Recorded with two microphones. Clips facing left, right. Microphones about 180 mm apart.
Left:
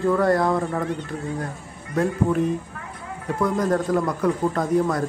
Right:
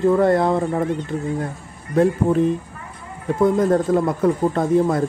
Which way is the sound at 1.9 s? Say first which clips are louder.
Right 5 dB; 25° right (ahead or behind).